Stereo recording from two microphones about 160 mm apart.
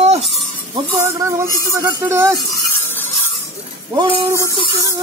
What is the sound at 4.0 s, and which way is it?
Speech, 35° right (ahead or behind).